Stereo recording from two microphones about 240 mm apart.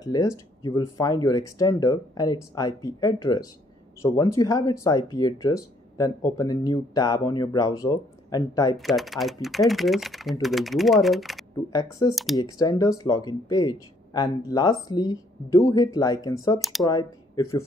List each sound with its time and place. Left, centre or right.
0.0 s speech: centre
8.7 s speech: centre
11.5 s speech: centre